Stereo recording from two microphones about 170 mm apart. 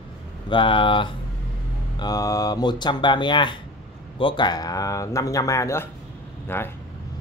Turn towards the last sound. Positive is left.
turn(degrees=10)  # may be behind; listen again after turning